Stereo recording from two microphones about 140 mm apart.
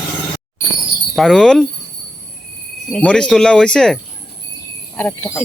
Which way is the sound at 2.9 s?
10° left (ahead or behind).